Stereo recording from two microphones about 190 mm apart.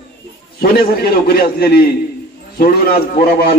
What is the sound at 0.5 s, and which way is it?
A man's voice, 50° left (ahead or behind).